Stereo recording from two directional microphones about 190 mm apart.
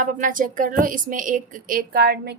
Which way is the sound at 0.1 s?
45° right (ahead or behind).